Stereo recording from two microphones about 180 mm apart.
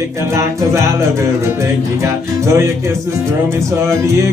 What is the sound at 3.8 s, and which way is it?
Music, 15° right (ahead or behind).